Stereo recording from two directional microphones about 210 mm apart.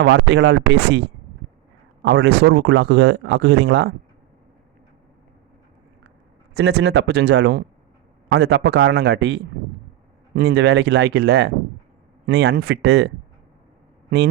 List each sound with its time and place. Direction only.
0.0 s speech: 55° right (ahead or behind)
6.5 s speech: 55° right (ahead or behind)